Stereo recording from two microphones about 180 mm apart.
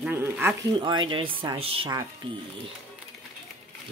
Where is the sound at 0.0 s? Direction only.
10° right (ahead or behind).